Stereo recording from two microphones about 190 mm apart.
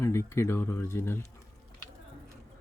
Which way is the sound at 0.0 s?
15° left (ahead or behind).